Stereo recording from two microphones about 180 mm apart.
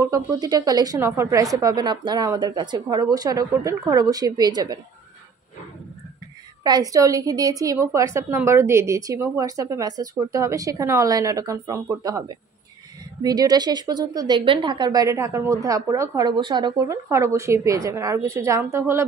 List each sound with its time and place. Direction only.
0.0 s a woman's voice: 20° right (ahead or behind)
6.6 s a woman's voice: 20° right (ahead or behind)